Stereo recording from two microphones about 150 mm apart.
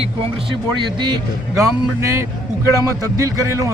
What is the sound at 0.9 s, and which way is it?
Speech, 30° right (ahead or behind).